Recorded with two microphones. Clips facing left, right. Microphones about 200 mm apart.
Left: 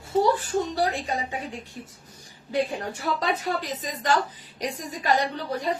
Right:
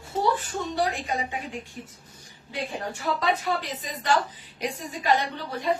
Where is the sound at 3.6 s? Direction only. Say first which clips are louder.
Left 1 dB; 40° left (ahead or behind).